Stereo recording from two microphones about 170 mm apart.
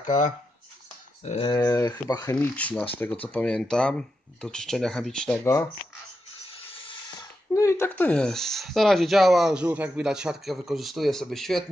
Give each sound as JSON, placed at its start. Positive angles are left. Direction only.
{"t": 0.0, "sound": "speech", "side_deg": 45}
{"t": 1.7, "sound": "speech", "side_deg": 20}
{"t": 5.4, "sound": "speech", "side_deg": 20}
{"t": 6.7, "sound": "a sound", "side_deg": 30}
{"t": 7.5, "sound": "speech", "side_deg": 15}